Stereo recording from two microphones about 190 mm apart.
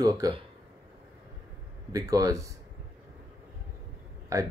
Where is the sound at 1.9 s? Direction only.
20° right (ahead or behind).